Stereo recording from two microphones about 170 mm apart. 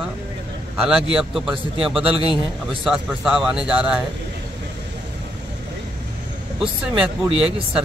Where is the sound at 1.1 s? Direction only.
5° right (ahead or behind).